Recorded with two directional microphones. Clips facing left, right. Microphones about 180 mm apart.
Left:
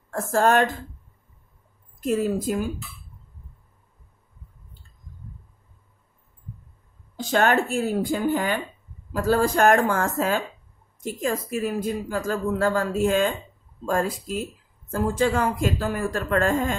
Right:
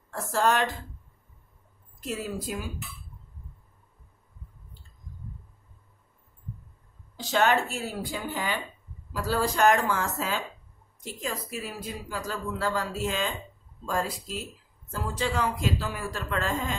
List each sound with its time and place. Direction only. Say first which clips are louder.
0.1 s speech: left 5 dB; 50° left (ahead or behind)
2.0 s speech: left 10 dB; 45° left (ahead or behind)
7.2 s speech: left 3 dB; 50° left (ahead or behind)